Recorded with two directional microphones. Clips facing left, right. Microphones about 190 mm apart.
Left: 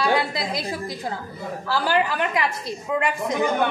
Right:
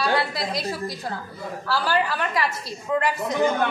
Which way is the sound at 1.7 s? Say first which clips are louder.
Left 1 dB; 15° left (ahead or behind).